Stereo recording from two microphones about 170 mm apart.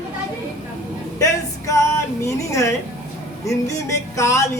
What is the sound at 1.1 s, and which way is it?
A man's voice, 20° left (ahead or behind).